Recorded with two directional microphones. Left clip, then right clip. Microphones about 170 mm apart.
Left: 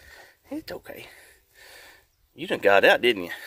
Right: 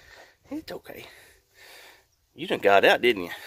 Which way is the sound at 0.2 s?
5° right (ahead or behind).